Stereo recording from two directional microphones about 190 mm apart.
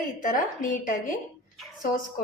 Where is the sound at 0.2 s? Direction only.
45° left (ahead or behind).